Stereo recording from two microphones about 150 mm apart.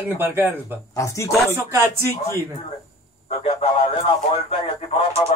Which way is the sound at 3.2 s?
45° left (ahead or behind).